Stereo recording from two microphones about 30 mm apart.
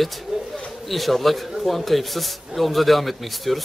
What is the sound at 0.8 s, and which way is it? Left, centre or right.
A man's voice, centre.